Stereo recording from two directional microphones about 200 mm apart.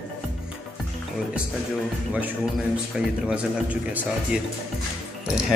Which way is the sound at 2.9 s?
5° right (ahead or behind).